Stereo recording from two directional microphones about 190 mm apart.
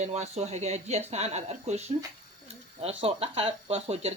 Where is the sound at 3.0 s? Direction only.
30° right (ahead or behind).